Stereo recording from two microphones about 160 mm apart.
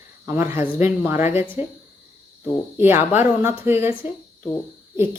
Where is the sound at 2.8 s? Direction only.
15° right (ahead or behind).